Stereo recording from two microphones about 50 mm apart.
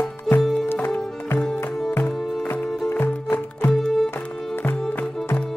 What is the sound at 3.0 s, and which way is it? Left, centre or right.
Music, left.